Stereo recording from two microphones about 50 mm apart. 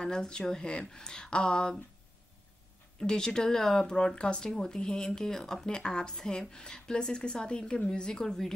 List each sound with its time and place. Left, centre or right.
0.0 s speech: centre
3.0 s speech: centre